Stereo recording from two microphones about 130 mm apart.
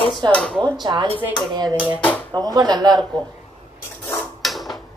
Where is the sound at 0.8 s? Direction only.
35° right (ahead or behind).